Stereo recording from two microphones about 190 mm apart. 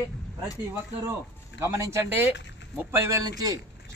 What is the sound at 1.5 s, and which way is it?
A man's voice, 15° right (ahead or behind).